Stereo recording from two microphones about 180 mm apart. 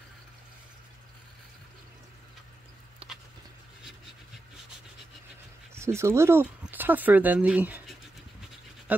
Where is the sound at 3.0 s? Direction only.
30° right (ahead or behind).